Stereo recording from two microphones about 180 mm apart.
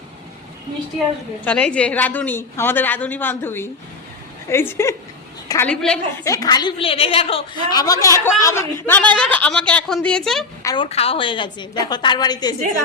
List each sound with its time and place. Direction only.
1.5 s a woman's voice: 5° left (ahead or behind)
6.2 s a woman's voice: 20° left (ahead or behind); by 10.4 s 5° left (ahead or behind)
10.6 s a woman's voice: 20° left (ahead or behind)
10.8 s a woman's voice: 35° left (ahead or behind)